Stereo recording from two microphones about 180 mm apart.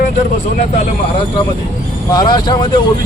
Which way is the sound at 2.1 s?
20° left (ahead or behind).